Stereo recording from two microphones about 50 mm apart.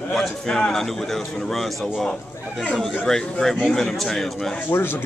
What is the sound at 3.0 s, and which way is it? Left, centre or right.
A man's voice, centre.